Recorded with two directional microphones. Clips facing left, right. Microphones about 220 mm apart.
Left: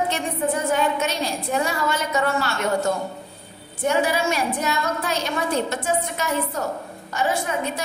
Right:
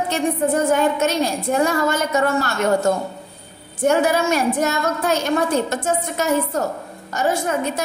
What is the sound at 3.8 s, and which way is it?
A woman's voice, 45° right (ahead or behind).